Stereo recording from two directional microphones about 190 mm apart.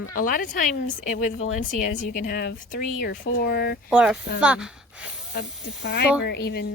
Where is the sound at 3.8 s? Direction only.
5° right (ahead or behind).